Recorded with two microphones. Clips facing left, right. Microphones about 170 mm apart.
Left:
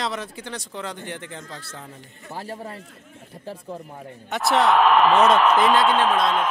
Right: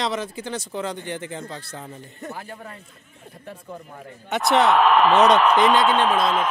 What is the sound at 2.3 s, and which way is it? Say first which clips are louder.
Speech: left 3 dB; 35° left (ahead or behind).